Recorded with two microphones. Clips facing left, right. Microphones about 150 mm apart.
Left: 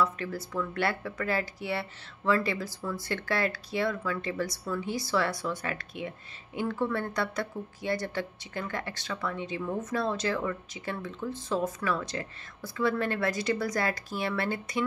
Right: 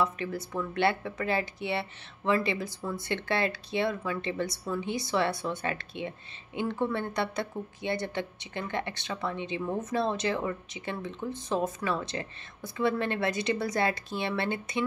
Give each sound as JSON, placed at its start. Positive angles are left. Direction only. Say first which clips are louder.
{"t": 0.0, "sound": "speech", "louder": "even", "side_deg": -20}